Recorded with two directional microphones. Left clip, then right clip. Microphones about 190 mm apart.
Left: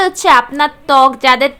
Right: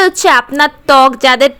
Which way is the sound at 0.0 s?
25° right (ahead or behind).